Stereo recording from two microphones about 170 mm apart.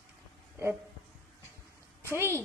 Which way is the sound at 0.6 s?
15° right (ahead or behind).